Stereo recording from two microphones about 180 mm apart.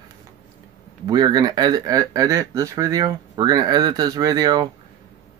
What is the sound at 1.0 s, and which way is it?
Speech, 20° right (ahead or behind).